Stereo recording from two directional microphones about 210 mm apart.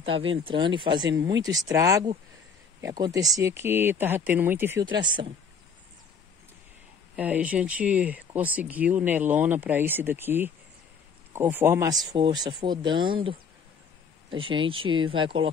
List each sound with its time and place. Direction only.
0.0 s speech: 25° right (ahead or behind)
4.8 s speech: 20° right (ahead or behind)
7.2 s speech: 5° right (ahead or behind); by 15.5 s 25° right (ahead or behind)